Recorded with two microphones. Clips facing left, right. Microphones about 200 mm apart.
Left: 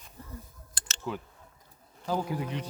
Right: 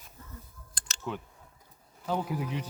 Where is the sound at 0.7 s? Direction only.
5° left (ahead or behind).